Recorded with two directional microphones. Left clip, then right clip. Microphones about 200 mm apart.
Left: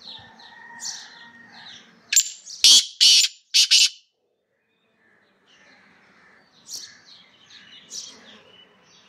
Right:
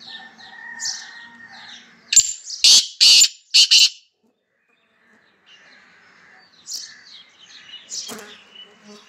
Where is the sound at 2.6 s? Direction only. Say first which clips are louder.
Right 2 dB; 10° left (ahead or behind).